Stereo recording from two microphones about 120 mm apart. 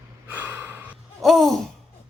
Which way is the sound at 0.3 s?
15° right (ahead or behind).